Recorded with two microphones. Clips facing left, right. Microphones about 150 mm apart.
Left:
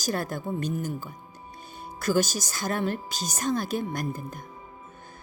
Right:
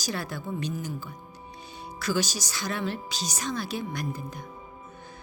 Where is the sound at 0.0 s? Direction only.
50° left (ahead or behind).